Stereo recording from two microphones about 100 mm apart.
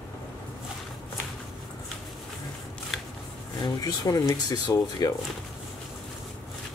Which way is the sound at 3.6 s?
40° left (ahead or behind).